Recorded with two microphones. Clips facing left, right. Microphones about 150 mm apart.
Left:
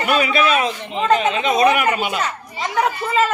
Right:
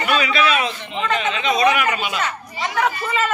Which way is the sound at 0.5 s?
40° left (ahead or behind).